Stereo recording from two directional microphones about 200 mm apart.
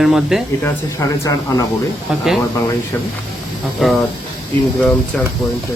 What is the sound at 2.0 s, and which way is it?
Speech, centre (ahead or behind).